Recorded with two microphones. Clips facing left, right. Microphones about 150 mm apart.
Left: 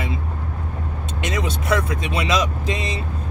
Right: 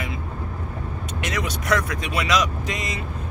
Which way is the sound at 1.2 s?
25° left (ahead or behind).